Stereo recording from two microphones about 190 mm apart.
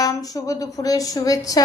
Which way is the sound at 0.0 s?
20° left (ahead or behind).